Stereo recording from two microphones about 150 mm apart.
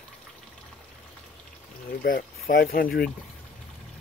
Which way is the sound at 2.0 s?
70° left (ahead or behind).